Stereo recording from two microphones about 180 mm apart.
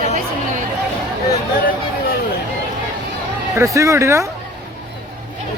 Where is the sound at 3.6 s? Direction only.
15° right (ahead or behind).